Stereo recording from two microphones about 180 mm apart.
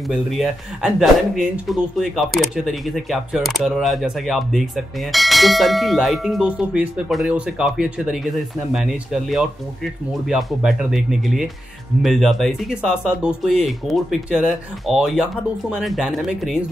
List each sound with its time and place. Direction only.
0.1 s speech: 5° right (ahead or behind)